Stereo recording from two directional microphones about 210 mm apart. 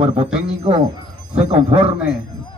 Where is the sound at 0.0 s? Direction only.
25° right (ahead or behind).